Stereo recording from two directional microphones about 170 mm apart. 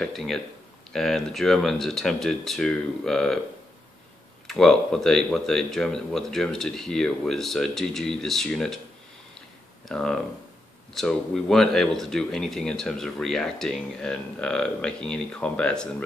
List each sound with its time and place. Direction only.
0.0 s speech: centre (ahead or behind)
4.5 s speech: 5° left (ahead or behind)
9.8 s speech: 5° left (ahead or behind)